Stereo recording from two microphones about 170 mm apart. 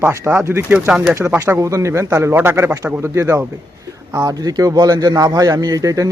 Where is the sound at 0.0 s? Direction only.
10° right (ahead or behind).